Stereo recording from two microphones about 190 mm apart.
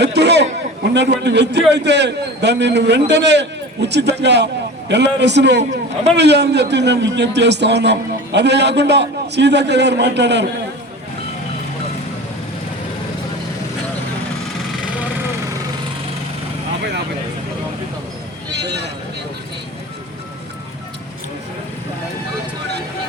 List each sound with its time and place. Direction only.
0.0 s a sound: 60° right (ahead or behind)
0.9 s a man's voice: 65° right (ahead or behind)
18.5 s vehicle: 60° right (ahead or behind)